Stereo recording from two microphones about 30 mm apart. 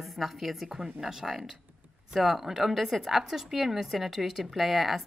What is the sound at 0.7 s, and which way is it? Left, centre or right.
Speech, right.